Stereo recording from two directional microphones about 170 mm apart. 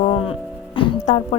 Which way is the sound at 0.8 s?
30° left (ahead or behind).